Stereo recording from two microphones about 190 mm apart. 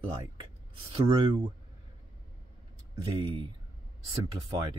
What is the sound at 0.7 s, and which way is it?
Speech, 25° right (ahead or behind).